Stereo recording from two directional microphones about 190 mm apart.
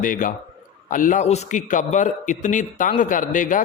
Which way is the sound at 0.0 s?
45° left (ahead or behind).